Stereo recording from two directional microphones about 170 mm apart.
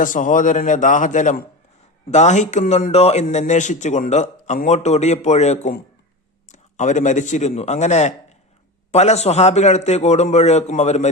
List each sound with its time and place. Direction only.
0.0 s a man's voice: 50° left (ahead or behind)